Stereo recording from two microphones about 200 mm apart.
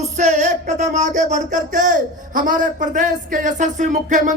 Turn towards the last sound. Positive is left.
turn(degrees=-40)  # may be behind; listen again after turning